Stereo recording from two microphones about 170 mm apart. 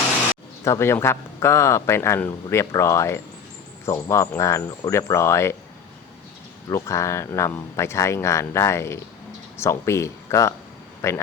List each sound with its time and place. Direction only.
0.6 s speech: 15° left (ahead or behind)
6.7 s speech: 20° left (ahead or behind)